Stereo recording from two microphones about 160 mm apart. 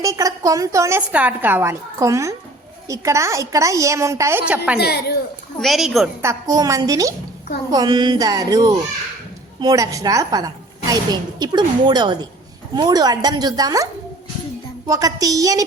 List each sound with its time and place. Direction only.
0.0 s a woman's voice: 20° right (ahead or behind)
4.8 s a woman's voice: 85° left
5.5 s a woman's voice: centre (ahead or behind)
6.2 s a woman's voice: 20° right (ahead or behind)
14.8 s a woman's voice: 20° right (ahead or behind)